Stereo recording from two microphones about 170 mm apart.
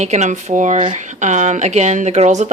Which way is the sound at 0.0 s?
40° right (ahead or behind).